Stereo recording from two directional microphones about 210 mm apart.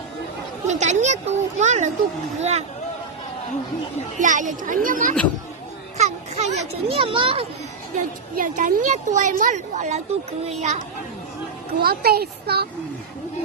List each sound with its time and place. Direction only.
0.7 s a woman's voice: 35° right (ahead or behind)
4.2 s a woman's voice: 35° right (ahead or behind)
7.9 s a woman's voice: 35° right (ahead or behind)
11.8 s speech: 45° right (ahead or behind)